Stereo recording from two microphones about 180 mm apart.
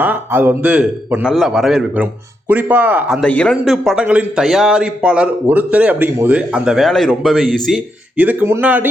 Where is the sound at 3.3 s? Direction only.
5° left (ahead or behind).